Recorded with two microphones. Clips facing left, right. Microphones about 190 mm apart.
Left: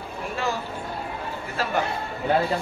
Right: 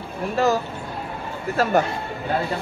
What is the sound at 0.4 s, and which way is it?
Speech, 40° right (ahead or behind).